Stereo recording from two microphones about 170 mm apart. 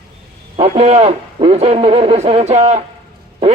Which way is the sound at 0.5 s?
35° right (ahead or behind).